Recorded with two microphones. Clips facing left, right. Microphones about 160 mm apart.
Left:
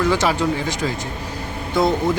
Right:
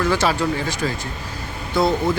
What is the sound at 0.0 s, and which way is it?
Speech, 15° left (ahead or behind).